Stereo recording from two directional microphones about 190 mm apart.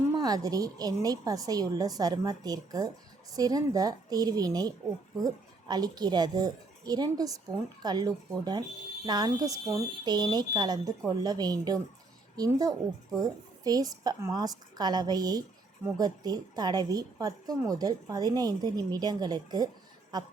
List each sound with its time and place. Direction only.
0.2 s a woman's voice: 20° right (ahead or behind)